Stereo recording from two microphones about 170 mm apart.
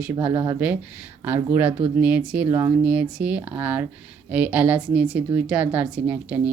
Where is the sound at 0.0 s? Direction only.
10° right (ahead or behind).